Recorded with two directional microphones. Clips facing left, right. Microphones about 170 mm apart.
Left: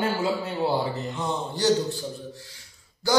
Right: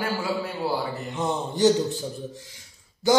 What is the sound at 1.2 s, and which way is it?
Speech, 20° right (ahead or behind).